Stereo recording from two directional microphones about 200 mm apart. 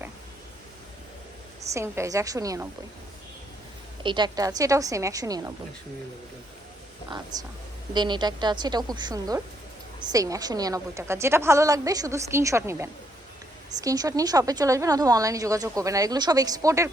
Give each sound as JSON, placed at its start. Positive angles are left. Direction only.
{"t": 1.7, "sound": "speech", "side_deg": -15}
{"t": 4.0, "sound": "speech", "side_deg": -25}
{"t": 7.9, "sound": "a woman's voice", "side_deg": -20}